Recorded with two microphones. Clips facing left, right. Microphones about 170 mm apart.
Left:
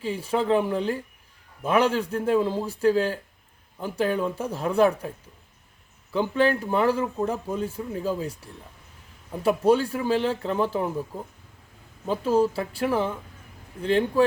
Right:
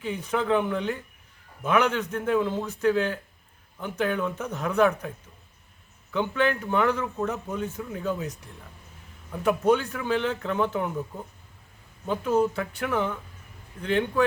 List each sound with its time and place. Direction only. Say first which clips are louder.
0.0 s speech: left 2 dB; 30° left (ahead or behind)
6.3 s speech: left 3 dB; 35° left (ahead or behind)
9.3 s speech: left 2 dB; 30° left (ahead or behind)
12.0 s speech: left 2 dB; 35° left (ahead or behind)